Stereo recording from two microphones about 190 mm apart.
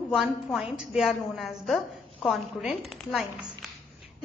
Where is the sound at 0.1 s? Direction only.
Centre (ahead or behind).